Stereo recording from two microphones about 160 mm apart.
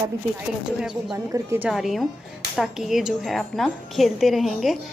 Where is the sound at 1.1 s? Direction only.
20° right (ahead or behind).